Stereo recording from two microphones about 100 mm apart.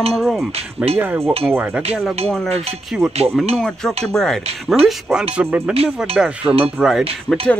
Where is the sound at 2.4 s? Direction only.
90° right.